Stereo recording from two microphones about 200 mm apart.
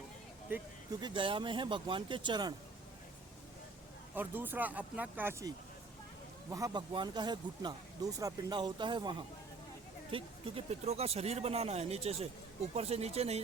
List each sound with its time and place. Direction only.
0.5 s speech: 10° right (ahead or behind)
1.0 s speech: 25° right (ahead or behind)
4.1 s speech: 10° right (ahead or behind)
6.5 s speech: 20° right (ahead or behind)